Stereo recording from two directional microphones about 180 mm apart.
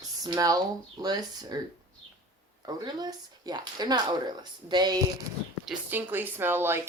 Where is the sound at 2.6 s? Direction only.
20° right (ahead or behind).